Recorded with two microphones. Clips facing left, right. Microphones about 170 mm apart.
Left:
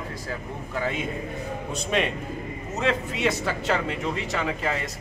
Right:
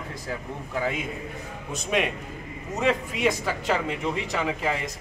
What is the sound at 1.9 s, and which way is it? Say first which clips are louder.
Speech: even; 5° right (ahead or behind).